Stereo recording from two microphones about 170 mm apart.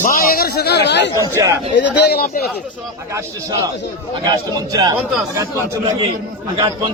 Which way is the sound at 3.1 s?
20° right (ahead or behind).